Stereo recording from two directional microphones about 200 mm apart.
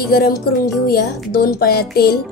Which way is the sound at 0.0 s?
50° left (ahead or behind).